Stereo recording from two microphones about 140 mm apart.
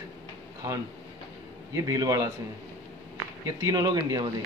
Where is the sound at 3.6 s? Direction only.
25° right (ahead or behind).